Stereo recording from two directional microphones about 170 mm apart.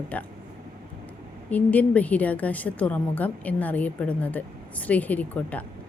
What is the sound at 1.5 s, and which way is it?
A woman's voice, 10° left (ahead or behind).